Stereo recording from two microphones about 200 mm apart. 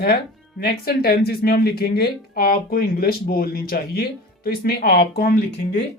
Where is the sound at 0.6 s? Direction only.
50° left (ahead or behind).